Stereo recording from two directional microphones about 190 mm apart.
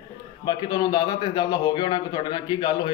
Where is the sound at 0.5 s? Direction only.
20° left (ahead or behind).